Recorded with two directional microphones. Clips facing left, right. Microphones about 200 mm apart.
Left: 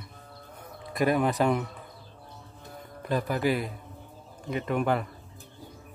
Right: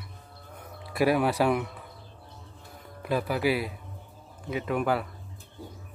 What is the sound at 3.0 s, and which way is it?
Speech, 5° right (ahead or behind).